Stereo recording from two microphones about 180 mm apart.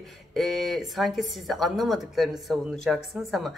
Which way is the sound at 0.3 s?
Centre (ahead or behind).